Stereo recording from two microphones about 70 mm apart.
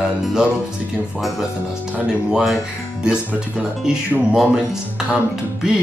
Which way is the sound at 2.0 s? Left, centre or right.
Centre.